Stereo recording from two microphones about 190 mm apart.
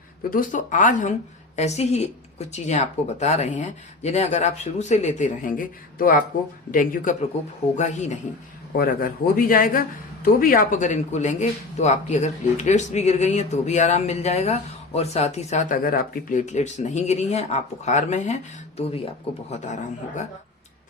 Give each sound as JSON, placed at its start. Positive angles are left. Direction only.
{"t": 0.3, "sound": "a man's voice", "side_deg": 45}
{"t": 8.7, "sound": "a man's voice", "side_deg": 50}
{"t": 19.5, "sound": "speech", "side_deg": 40}